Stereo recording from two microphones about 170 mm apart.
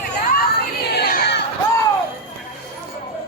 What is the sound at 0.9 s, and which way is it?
Crowd, 70° left (ahead or behind).